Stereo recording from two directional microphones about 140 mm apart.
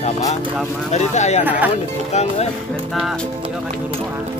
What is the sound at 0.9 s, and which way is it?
Speech, 55° left (ahead or behind).